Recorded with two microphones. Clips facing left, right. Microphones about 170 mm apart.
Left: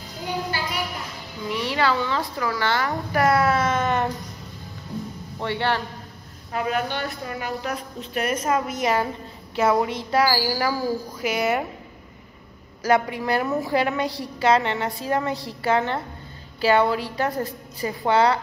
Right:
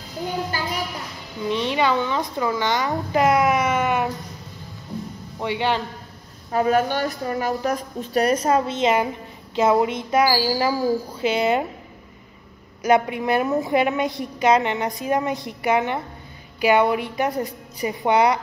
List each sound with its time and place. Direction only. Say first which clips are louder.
1.0 s speech: right 4 dB; 20° right (ahead or behind)
5.4 s a woman's voice: right 2 dB; 15° right (ahead or behind)
6.5 s a woman's voice: right 6 dB; 40° right (ahead or behind); by 11.6 s 25° right (ahead or behind)
12.8 s a woman's voice: right 2 dB; 20° right (ahead or behind)